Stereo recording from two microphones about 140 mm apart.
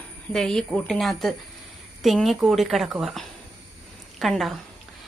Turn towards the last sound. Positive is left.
turn(degrees=0)  # may be behind; listen again after turning